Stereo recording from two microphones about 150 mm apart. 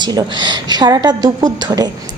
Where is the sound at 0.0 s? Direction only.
30° right (ahead or behind).